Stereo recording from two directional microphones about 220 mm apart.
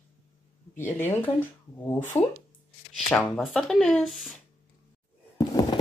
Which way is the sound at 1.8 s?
20° left (ahead or behind).